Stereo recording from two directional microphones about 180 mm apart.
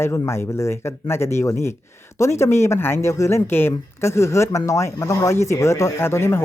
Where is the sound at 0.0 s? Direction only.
15° left (ahead or behind).